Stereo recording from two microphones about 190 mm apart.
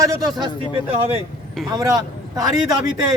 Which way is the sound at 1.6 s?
20° right (ahead or behind).